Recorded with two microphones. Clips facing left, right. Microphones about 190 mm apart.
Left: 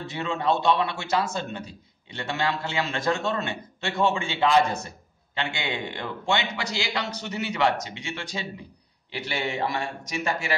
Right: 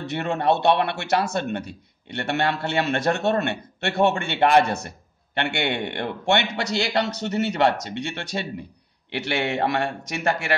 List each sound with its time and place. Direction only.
0.0 s a man's voice: 65° right (ahead or behind)